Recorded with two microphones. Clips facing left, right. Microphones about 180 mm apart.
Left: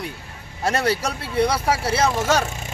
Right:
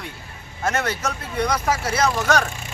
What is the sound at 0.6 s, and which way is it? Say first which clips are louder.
Speech: left 2 dB; 35° left (ahead or behind).